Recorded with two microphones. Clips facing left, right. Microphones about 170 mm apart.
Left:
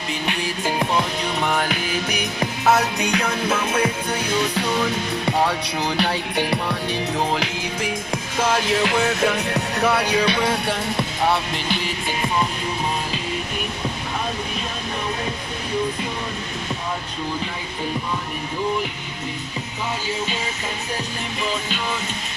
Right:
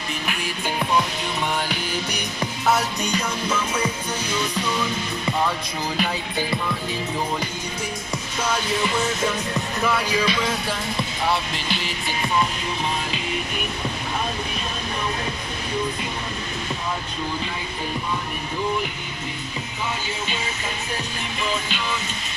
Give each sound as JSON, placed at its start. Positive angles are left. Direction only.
{"t": 1.5, "sound": "music", "side_deg": 45}
{"t": 2.4, "sound": "music", "side_deg": 70}
{"t": 6.0, "sound": "music", "side_deg": 70}
{"t": 7.2, "sound": "music", "side_deg": 85}
{"t": 8.4, "sound": "music", "side_deg": 50}